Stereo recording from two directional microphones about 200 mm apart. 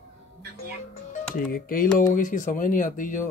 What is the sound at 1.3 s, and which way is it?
Speech, 45° left (ahead or behind).